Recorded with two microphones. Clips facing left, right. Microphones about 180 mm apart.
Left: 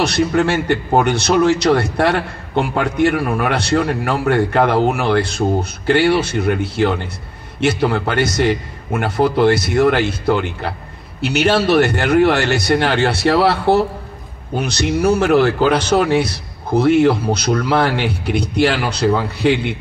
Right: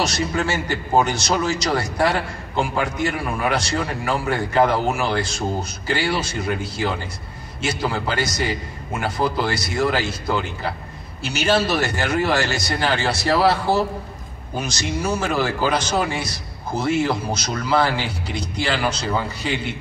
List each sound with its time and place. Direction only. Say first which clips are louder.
0.0 s a man's voice: left 7 dB; 60° left (ahead or behind)